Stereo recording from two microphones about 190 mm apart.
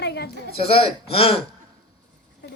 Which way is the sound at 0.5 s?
30° left (ahead or behind).